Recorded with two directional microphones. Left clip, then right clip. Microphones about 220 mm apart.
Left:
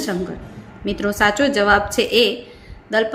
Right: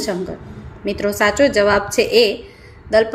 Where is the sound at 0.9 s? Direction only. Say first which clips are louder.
Even; 5° right (ahead or behind).